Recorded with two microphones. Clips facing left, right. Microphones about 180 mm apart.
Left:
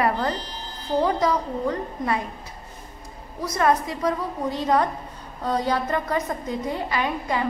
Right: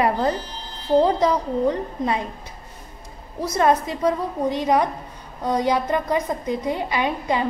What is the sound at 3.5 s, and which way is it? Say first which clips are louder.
A woman's voice: right 2 dB; 20° right (ahead or behind).